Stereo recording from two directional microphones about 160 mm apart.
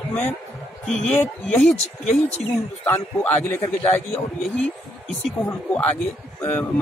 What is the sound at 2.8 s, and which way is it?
Speech, 10° left (ahead or behind).